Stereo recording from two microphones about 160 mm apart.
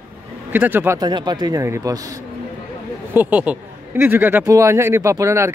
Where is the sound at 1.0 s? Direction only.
25° right (ahead or behind).